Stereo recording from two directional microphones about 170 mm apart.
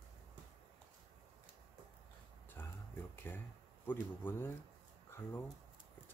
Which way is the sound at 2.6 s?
10° left (ahead or behind).